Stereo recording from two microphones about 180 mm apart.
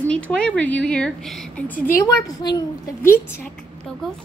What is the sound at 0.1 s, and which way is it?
A woman's voice, 5° left (ahead or behind).